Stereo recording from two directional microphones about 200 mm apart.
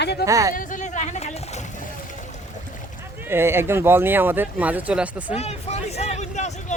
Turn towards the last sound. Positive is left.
turn(degrees=35)  # may be behind; listen again after turning